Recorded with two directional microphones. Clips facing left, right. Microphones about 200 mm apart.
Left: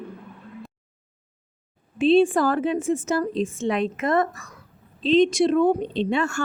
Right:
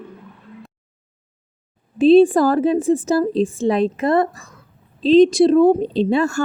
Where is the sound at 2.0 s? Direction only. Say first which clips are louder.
Right 6 dB; 35° right (ahead or behind).